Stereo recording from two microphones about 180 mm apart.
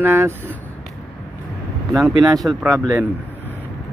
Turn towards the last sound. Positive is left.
turn(degrees=-15)  # may be behind; listen again after turning